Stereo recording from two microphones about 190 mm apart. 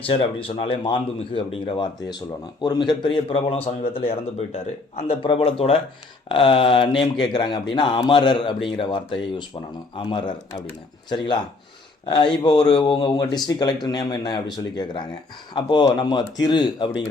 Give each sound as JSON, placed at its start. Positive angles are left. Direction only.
{"t": 0.0, "sound": "a man's voice", "side_deg": 30}
{"t": 12.0, "sound": "a man's voice", "side_deg": 20}